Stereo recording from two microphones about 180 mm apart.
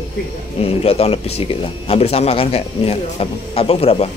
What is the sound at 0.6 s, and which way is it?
Speech, 35° left (ahead or behind).